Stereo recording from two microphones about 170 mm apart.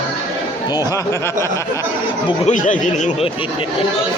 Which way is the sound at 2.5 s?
50° left (ahead or behind).